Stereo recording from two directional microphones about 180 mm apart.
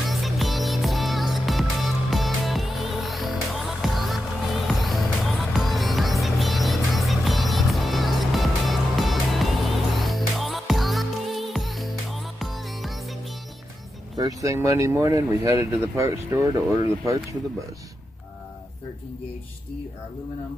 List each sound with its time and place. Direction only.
0.0 s music: centre (ahead or behind)
14.1 s speech: 20° right (ahead or behind)